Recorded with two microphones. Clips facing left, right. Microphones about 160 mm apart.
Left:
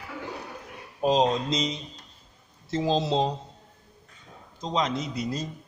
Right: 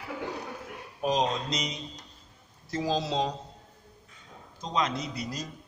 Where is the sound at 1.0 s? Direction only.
25° left (ahead or behind).